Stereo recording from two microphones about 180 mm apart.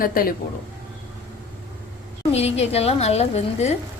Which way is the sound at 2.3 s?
35° left (ahead or behind).